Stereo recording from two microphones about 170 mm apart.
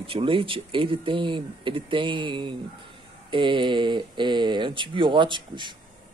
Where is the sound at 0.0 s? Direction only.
30° right (ahead or behind).